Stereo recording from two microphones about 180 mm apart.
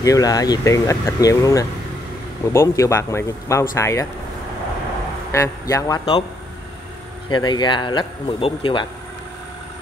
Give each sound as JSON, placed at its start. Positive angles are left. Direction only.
{"t": 0.0, "sound": "speech", "side_deg": 20}
{"t": 5.3, "sound": "speech", "side_deg": 15}
{"t": 7.2, "sound": "speech", "side_deg": 25}